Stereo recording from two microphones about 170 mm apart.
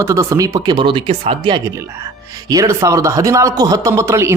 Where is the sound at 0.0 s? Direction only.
15° right (ahead or behind).